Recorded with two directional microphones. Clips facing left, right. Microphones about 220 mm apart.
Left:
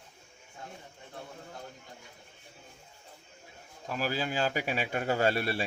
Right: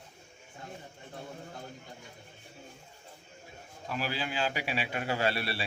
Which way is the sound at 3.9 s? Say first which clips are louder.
Left 3 dB; 45° left (ahead or behind).